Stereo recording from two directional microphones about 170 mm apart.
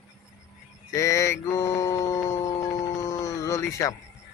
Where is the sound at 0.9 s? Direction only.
15° left (ahead or behind).